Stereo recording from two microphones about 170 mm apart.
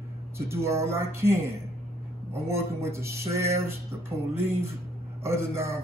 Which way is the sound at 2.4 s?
15° right (ahead or behind).